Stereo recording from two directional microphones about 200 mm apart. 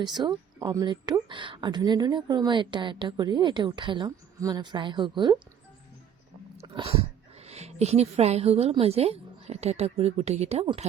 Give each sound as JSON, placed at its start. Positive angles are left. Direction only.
{"t": 0.3, "sound": "speech", "side_deg": -20}
{"t": 6.6, "sound": "speech", "side_deg": -30}